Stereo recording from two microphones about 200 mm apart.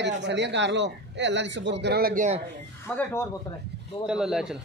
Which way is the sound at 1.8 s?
50° right (ahead or behind).